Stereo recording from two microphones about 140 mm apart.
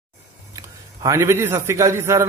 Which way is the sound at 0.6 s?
20° right (ahead or behind).